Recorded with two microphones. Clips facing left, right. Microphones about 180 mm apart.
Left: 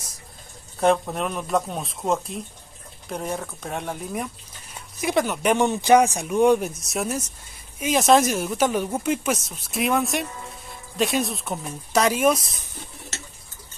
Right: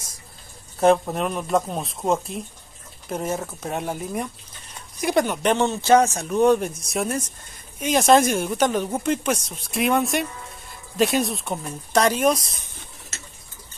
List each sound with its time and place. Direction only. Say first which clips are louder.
0.7 s speech: right 3 dB; centre (ahead or behind)